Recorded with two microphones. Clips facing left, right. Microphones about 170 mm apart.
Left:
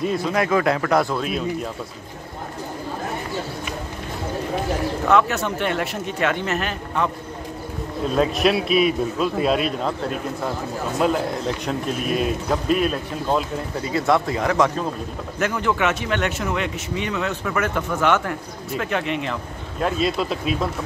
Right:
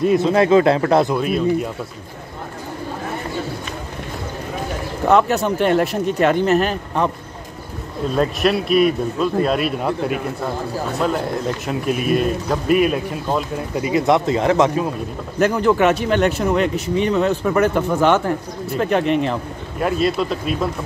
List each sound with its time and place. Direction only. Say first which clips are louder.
0.2 s speech: right 7 dB; 25° right (ahead or behind)
1.1 s a man's voice: right 6 dB; 5° right (ahead or behind)
5.0 s speech: right 5 dB; 35° right (ahead or behind)
8.2 s a man's voice: right 1 dB; centre (ahead or behind); by 14.7 s 25° right (ahead or behind)
15.3 s speech: right 7 dB; 35° right (ahead or behind)
19.8 s a man's voice: right 3 dB; 5° right (ahead or behind)